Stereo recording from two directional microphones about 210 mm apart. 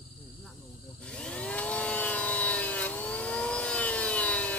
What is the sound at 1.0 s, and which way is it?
Chainsaw, 5° left (ahead or behind).